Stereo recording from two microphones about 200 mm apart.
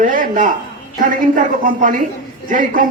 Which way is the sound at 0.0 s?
40° right (ahead or behind).